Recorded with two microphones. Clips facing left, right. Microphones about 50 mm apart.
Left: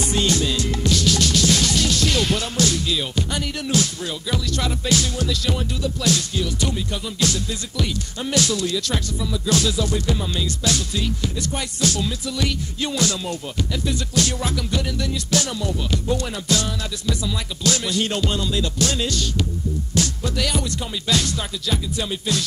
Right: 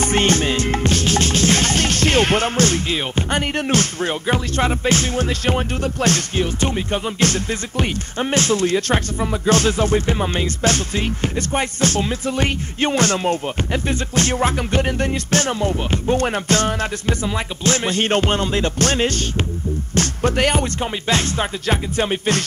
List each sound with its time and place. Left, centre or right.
0.0 s music: right